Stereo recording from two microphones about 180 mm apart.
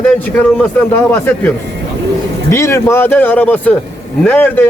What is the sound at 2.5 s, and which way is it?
A man's voice, 15° left (ahead or behind).